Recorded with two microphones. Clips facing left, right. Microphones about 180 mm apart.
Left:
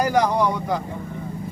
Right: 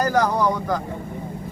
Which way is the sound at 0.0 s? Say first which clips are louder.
Even; 10° left (ahead or behind).